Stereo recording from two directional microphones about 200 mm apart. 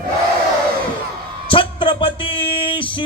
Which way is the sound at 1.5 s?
25° left (ahead or behind).